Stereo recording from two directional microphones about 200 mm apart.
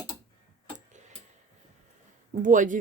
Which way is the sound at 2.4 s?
40° right (ahead or behind).